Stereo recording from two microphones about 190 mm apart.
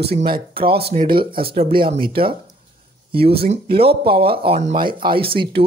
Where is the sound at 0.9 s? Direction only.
45° right (ahead or behind).